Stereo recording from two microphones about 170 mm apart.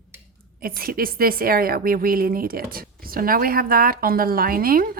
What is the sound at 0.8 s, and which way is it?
A woman's voice, 60° right (ahead or behind).